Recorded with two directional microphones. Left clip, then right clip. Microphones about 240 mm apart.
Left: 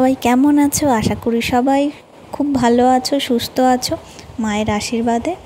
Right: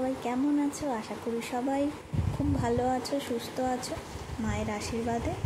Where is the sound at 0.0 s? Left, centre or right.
Left.